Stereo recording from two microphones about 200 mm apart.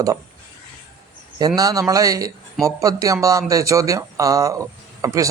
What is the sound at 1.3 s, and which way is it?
Speech, 20° right (ahead or behind).